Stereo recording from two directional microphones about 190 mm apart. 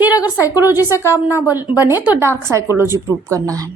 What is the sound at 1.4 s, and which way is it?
A woman's voice, 10° right (ahead or behind).